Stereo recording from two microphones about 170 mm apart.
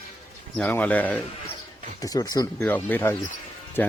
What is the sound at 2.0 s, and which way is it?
Speech, 20° left (ahead or behind).